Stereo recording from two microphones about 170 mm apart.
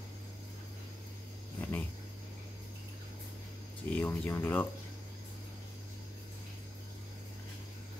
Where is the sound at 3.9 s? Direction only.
10° left (ahead or behind).